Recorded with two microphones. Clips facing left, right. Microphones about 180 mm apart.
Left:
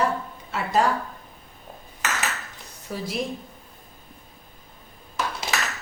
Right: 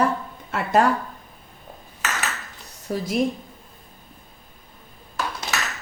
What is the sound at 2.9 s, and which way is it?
Speech, 40° right (ahead or behind).